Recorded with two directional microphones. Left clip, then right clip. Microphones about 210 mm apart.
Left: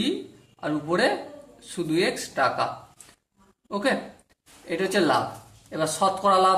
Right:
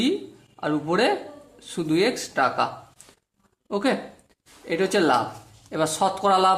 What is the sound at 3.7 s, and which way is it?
Speech, 35° right (ahead or behind).